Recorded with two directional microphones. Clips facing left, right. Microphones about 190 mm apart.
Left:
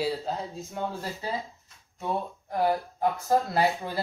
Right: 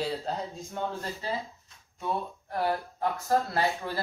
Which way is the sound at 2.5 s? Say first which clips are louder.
Left 3 dB; 15° left (ahead or behind).